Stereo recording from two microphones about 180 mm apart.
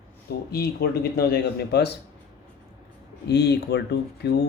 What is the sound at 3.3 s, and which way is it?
Speech, 65° left (ahead or behind).